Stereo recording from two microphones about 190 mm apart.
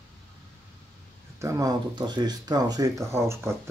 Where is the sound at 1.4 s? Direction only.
15° right (ahead or behind).